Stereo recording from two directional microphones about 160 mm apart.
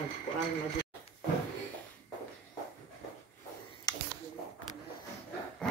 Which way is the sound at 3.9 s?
25° left (ahead or behind).